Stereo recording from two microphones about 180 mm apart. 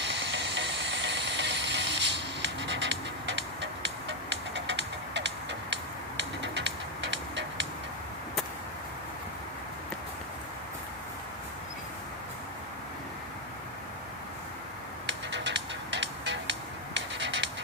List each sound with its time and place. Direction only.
0.0 s steam: 80° right
15.0 s music: 85° right